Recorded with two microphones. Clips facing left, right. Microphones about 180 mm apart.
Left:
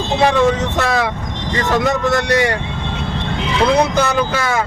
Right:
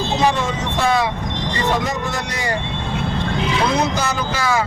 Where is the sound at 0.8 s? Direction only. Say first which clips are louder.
Even; 70° left (ahead or behind).